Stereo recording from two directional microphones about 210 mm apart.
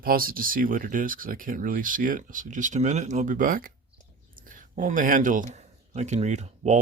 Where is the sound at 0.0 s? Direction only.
45° right (ahead or behind).